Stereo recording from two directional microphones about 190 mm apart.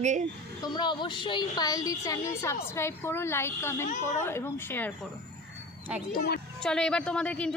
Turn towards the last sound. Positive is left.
turn(degrees=5)  # may be behind; listen again after turning